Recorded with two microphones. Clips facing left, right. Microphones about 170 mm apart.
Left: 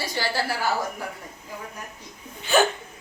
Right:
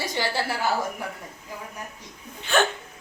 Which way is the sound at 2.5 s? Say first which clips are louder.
Left 2 dB; 5° left (ahead or behind).